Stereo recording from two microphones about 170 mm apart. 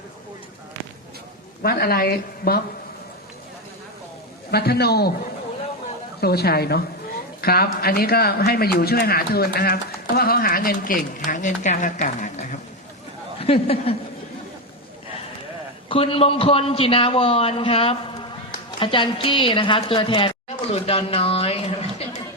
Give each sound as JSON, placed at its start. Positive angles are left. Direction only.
{"t": 1.6, "sound": "speech", "side_deg": 60}
{"t": 4.5, "sound": "a woman's voice", "side_deg": 70}
{"t": 6.1, "sound": "a woman's voice", "side_deg": 70}
{"t": 11.3, "sound": "a woman's voice", "side_deg": 45}
{"t": 13.4, "sound": "a man's voice", "side_deg": 35}
{"t": 15.9, "sound": "a man's voice", "side_deg": 35}